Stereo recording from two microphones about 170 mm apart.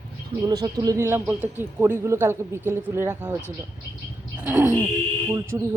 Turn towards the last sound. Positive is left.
turn(degrees=-15)  # may be behind; listen again after turning